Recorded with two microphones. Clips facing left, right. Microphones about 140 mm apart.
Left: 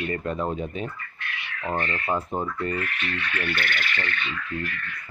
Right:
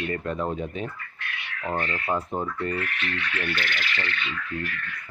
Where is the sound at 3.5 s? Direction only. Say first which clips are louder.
Left 1 dB; 55° left (ahead or behind).